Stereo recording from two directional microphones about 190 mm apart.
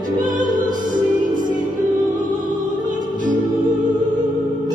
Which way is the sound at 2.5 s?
45° right (ahead or behind).